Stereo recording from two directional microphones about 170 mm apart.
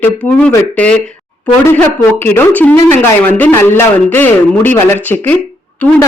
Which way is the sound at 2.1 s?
10° left (ahead or behind).